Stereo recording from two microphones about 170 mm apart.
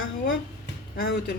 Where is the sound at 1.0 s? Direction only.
75° left (ahead or behind).